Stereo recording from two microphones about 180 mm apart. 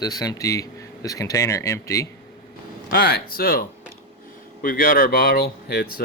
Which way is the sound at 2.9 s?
60° left (ahead or behind).